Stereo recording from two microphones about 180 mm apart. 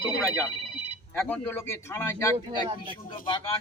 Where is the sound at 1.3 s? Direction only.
10° left (ahead or behind).